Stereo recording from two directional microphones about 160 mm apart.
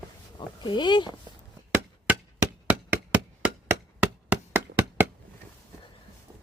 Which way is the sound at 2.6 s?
10° right (ahead or behind).